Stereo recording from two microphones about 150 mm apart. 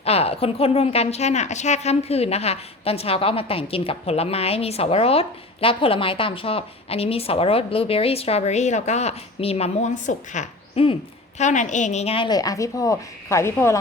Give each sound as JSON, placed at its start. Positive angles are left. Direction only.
{"t": 0.0, "sound": "a woman's voice", "side_deg": 40}